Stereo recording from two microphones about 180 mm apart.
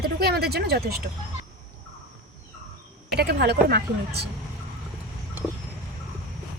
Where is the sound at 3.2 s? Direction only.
65° right (ahead or behind).